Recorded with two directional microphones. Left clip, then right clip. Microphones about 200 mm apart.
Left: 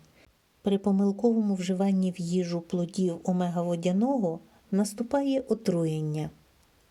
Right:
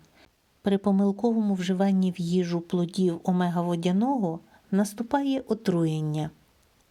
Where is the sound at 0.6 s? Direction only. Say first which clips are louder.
Right 2 dB; 20° right (ahead or behind).